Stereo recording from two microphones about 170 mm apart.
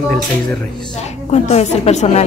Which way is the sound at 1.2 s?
40° left (ahead or behind).